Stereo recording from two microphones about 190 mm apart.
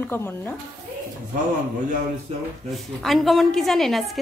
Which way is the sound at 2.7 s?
Centre (ahead or behind).